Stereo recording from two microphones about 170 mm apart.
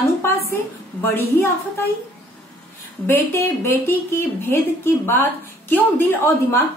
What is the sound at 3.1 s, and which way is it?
A woman's voice, 15° left (ahead or behind).